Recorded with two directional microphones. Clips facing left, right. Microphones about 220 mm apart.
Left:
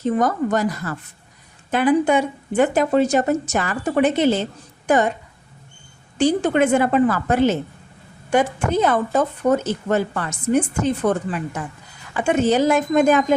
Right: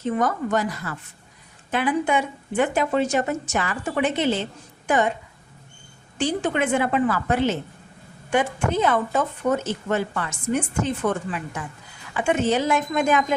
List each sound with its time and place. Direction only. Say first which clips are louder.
0.0 s speech: left 4 dB; 35° left (ahead or behind)
6.1 s speech: left 6 dB; 40° left (ahead or behind)